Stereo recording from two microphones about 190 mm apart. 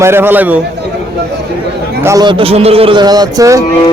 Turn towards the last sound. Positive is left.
turn(degrees=-20)  # may be behind; listen again after turning